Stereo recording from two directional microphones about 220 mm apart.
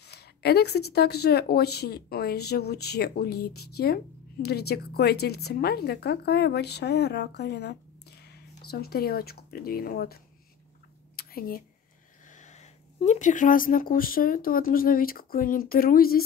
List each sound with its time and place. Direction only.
0.0 s speech: 50° left (ahead or behind)
11.1 s a sound: 40° left (ahead or behind)
12.3 s speech: 35° left (ahead or behind)